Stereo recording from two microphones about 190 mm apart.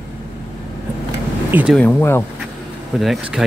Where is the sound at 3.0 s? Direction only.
Centre (ahead or behind).